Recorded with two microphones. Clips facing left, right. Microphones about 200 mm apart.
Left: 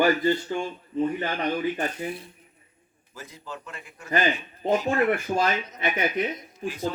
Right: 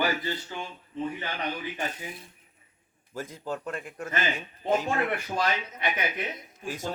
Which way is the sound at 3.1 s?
50° right (ahead or behind).